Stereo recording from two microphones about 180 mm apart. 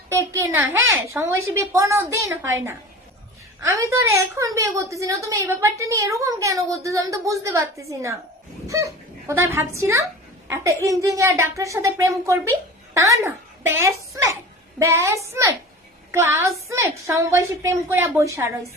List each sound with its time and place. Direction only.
0.1 s a child's voice: 15° right (ahead or behind)
3.6 s a woman's voice: 15° right (ahead or behind)